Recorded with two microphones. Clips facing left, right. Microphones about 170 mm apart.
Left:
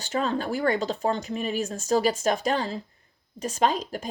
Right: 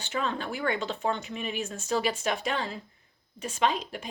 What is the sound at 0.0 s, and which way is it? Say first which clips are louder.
A woman's voice: left 5 dB; 40° left (ahead or behind).